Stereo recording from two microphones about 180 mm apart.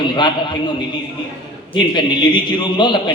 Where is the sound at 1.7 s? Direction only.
25° left (ahead or behind).